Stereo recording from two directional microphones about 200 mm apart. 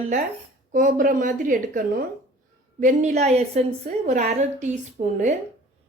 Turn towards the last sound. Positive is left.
turn(degrees=-35)  # may be behind; listen again after turning